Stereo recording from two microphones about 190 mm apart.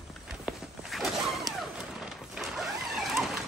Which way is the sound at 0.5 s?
Centre (ahead or behind).